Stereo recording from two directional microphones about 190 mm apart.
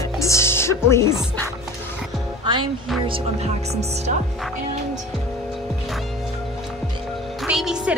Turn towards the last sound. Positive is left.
turn(degrees=-5)  # may be behind; listen again after turning